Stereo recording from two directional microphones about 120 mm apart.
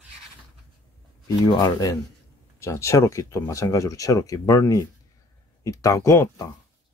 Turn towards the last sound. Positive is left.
turn(degrees=25)  # may be behind; listen again after turning